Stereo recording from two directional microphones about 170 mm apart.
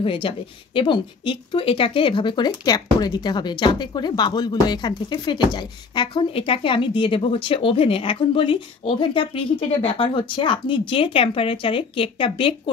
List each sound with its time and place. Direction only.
0.0 s speech: 30° left (ahead or behind)